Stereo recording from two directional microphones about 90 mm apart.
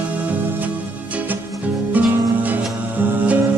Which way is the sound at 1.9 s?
20° right (ahead or behind).